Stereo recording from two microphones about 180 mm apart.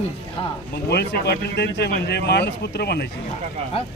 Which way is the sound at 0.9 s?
65° left (ahead or behind).